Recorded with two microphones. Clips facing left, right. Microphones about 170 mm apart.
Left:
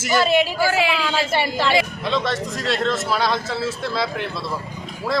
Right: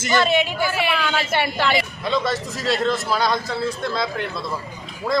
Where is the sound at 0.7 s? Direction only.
90° left.